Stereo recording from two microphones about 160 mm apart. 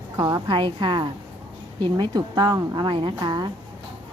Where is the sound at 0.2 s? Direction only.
30° right (ahead or behind).